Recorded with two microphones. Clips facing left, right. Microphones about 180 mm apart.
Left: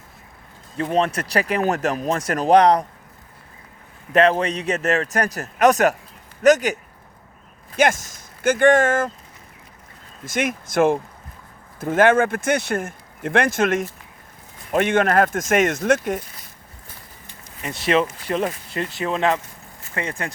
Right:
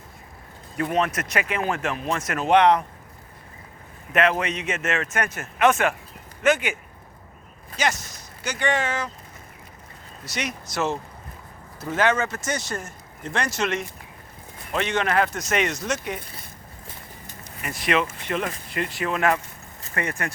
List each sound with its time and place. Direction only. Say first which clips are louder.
0.8 s speech: left 3 dB; 30° left (ahead or behind)
4.1 s speech: left 5 dB; 30° left (ahead or behind)
7.8 s speech: left 7 dB; 50° left (ahead or behind)
10.2 s speech: left 7 dB; 50° left (ahead or behind)
17.6 s speech: left 4 dB; 30° left (ahead or behind)